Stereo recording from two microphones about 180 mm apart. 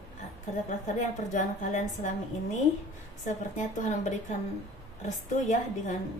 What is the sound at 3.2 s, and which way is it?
Speech, 45° left (ahead or behind).